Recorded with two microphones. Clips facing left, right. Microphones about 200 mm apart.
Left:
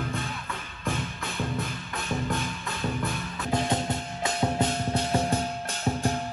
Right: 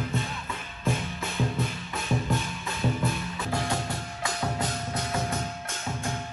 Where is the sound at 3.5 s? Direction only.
20° left (ahead or behind).